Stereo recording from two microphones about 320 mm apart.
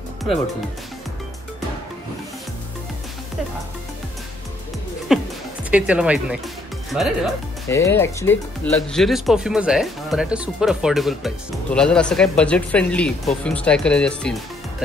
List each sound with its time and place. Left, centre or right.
5.1 s music: centre
5.7 s speech: centre